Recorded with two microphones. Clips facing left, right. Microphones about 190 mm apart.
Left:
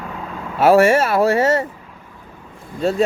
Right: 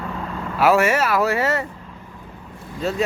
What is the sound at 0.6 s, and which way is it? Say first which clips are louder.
Speech: left 5 dB; 30° left (ahead or behind).